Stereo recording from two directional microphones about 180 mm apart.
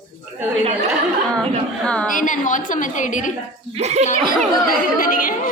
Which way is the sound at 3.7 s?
35° right (ahead or behind).